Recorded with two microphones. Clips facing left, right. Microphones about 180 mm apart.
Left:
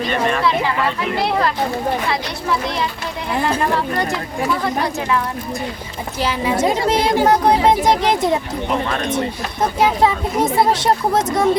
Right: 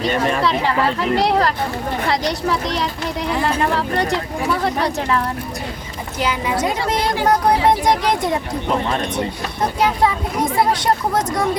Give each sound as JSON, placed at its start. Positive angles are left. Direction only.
{"t": 2.0, "sound": "speech", "side_deg": -35}
{"t": 3.8, "sound": "speech", "side_deg": -35}
{"t": 6.1, "sound": "speech", "side_deg": 30}
{"t": 9.8, "sound": "speech", "side_deg": 25}